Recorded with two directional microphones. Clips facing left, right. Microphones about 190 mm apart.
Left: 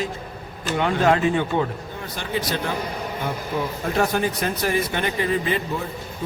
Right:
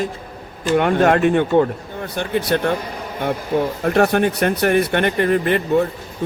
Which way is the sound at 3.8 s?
65° right (ahead or behind).